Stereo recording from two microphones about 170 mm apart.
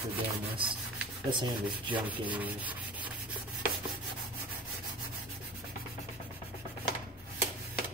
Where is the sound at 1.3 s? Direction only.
30° right (ahead or behind).